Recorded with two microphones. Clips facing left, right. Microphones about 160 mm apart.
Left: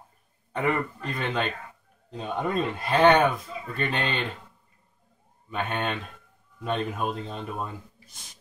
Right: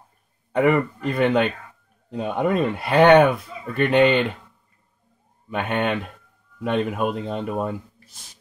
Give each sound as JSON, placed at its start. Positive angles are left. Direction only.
{"t": 0.6, "sound": "speech", "side_deg": -65}
{"t": 5.5, "sound": "speech", "side_deg": -70}